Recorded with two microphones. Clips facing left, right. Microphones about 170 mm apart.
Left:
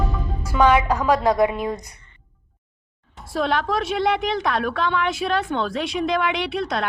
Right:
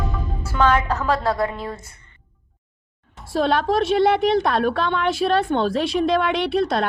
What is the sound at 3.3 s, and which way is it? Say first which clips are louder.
A woman's voice: right 3 dB; 30° right (ahead or behind).